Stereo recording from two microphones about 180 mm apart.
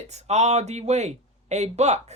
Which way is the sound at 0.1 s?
40° right (ahead or behind).